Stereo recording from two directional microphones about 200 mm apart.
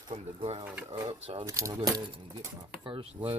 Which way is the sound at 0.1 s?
30° right (ahead or behind).